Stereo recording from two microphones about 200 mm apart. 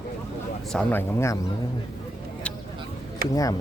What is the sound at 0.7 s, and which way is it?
Speech, 10° left (ahead or behind).